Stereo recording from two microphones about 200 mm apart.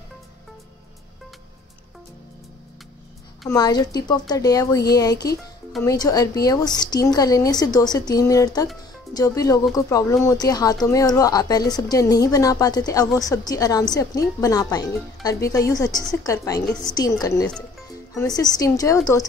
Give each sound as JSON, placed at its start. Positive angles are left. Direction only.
{"t": 3.4, "sound": "a woman's voice", "side_deg": 20}
{"t": 16.6, "sound": "a woman's voice", "side_deg": 5}
{"t": 16.9, "sound": "a woman's voice", "side_deg": 20}